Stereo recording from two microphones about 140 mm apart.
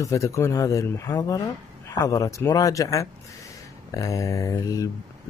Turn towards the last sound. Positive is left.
turn(degrees=25)  # may be behind; listen again after turning